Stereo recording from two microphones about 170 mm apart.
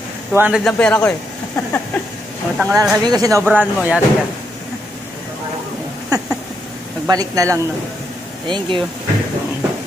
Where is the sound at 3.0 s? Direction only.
20° right (ahead or behind).